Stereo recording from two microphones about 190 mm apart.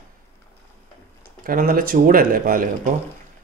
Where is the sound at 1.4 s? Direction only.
50° right (ahead or behind).